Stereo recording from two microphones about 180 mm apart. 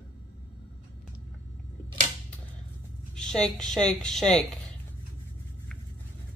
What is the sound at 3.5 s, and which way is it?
Speech, 5° left (ahead or behind).